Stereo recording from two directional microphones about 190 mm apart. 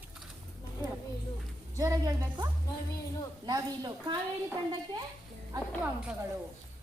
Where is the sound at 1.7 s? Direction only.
15° right (ahead or behind).